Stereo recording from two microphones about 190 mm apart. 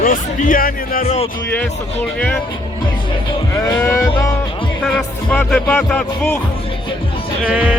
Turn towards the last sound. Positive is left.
turn(degrees=-5)  # may be behind; listen again after turning